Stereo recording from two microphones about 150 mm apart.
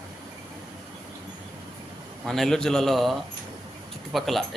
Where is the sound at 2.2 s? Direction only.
5° left (ahead or behind).